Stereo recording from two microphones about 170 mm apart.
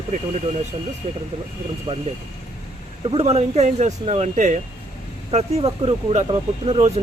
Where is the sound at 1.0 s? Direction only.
45° right (ahead or behind).